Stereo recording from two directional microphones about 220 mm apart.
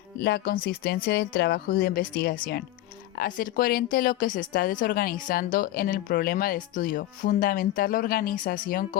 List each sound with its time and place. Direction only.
0.2 s a woman's voice: 45° left (ahead or behind)